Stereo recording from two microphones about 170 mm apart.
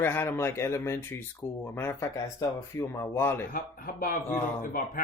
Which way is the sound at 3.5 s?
60° left (ahead or behind).